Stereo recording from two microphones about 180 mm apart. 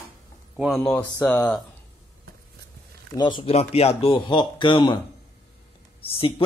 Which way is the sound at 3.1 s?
25° left (ahead or behind).